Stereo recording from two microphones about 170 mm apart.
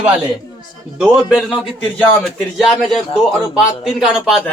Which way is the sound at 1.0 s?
Centre (ahead or behind).